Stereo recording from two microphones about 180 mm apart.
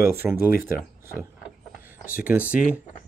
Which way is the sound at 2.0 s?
55° left (ahead or behind).